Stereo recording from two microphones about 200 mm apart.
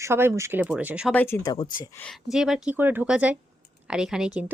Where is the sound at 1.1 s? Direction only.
10° left (ahead or behind).